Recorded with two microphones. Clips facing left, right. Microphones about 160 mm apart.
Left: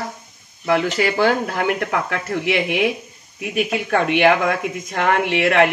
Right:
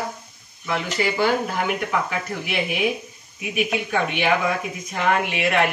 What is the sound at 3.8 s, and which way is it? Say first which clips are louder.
Speech: left 7 dB; 70° left (ahead or behind).